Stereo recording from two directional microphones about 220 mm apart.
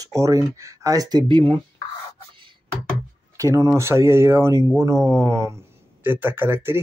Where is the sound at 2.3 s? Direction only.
20° right (ahead or behind).